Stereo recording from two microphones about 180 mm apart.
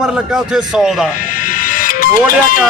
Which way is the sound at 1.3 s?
50° left (ahead or behind).